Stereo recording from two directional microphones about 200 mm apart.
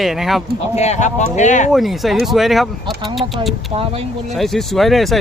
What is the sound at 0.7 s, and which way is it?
Speech, 35° left (ahead or behind).